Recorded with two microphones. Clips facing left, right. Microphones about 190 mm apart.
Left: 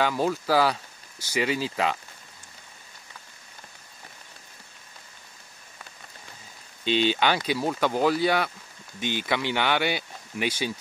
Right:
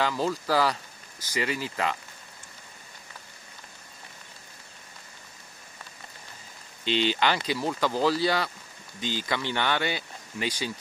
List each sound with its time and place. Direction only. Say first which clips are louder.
0.0 s speech: left 2 dB; 20° left (ahead or behind)
0.3 s speech: left 2 dB; 5° left (ahead or behind)
1.3 s speech: left 4 dB; 20° left (ahead or behind)
6.8 s speech: left 2 dB; 15° left (ahead or behind)